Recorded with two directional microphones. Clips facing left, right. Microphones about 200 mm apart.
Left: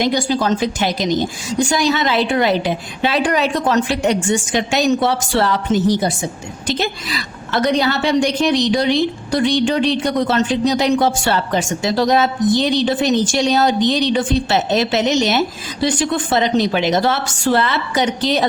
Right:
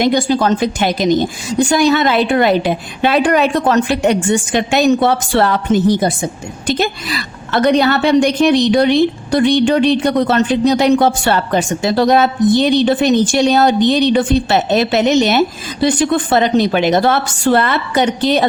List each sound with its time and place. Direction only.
0.0 s a woman's voice: 55° right (ahead or behind)